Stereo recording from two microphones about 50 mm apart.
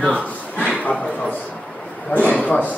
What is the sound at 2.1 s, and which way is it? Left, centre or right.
Speech, left.